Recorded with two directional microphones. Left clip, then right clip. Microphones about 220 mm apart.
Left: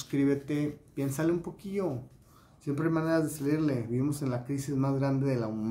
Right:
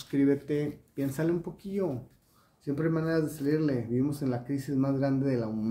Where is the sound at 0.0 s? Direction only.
15° left (ahead or behind).